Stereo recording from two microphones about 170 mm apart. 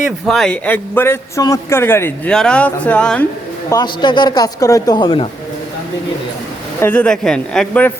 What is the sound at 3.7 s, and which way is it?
A man's voice, 25° left (ahead or behind).